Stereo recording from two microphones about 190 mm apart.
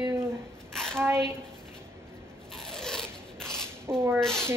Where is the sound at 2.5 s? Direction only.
5° left (ahead or behind).